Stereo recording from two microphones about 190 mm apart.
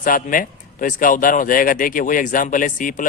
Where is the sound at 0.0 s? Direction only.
45° left (ahead or behind).